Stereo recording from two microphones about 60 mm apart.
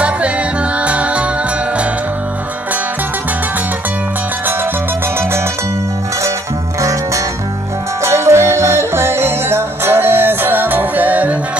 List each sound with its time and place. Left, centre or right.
0.8 s music: right
8.0 s music: right